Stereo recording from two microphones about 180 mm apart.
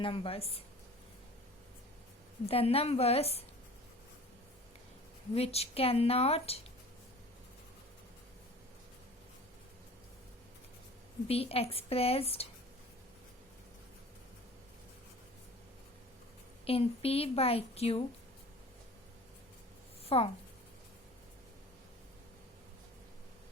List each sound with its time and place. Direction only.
0.0 s a woman's voice: 30° left (ahead or behind)
2.5 s a woman's voice: 35° left (ahead or behind)
5.3 s a woman's voice: 35° left (ahead or behind)
11.3 s a woman's voice: 35° left (ahead or behind)
16.6 s a woman's voice: 35° left (ahead or behind)
20.1 s speech: 30° left (ahead or behind)